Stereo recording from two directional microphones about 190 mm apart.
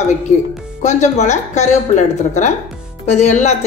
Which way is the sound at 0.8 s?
40° left (ahead or behind).